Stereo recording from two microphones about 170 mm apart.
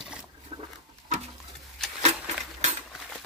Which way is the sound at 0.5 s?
30° right (ahead or behind).